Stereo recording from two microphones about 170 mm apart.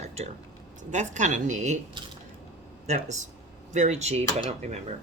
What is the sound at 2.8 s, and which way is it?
Speech, 40° right (ahead or behind).